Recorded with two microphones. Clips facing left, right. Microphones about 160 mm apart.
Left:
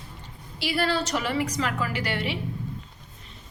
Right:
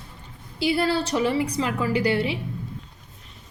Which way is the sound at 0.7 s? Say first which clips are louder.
Right 3 dB; 30° right (ahead or behind).